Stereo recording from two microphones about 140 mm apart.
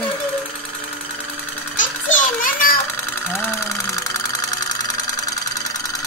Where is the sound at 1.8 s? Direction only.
70° left (ahead or behind).